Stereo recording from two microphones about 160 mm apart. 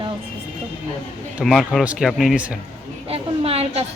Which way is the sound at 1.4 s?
Centre (ahead or behind).